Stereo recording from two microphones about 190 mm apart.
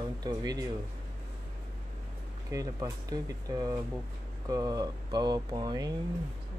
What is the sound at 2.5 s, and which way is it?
Speech, 20° right (ahead or behind).